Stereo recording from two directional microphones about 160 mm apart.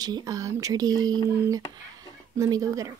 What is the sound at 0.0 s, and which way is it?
Speech, 25° right (ahead or behind).